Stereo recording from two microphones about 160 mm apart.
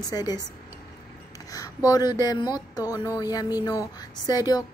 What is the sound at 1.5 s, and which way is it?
A woman's voice, 25° left (ahead or behind).